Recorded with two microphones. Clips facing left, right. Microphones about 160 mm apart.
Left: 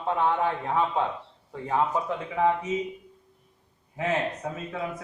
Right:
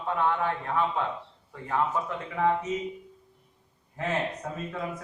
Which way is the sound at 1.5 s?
20° left (ahead or behind).